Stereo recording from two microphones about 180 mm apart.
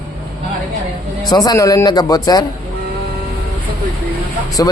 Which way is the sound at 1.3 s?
20° left (ahead or behind).